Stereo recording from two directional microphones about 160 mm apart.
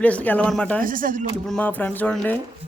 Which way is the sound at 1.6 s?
10° left (ahead or behind).